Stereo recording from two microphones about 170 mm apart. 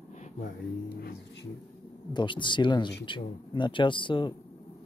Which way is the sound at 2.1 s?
30° left (ahead or behind).